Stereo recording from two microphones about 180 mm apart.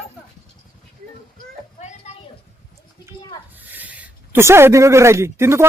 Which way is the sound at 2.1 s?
40° left (ahead or behind).